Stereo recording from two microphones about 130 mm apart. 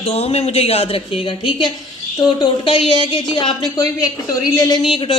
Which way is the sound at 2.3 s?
40° left (ahead or behind).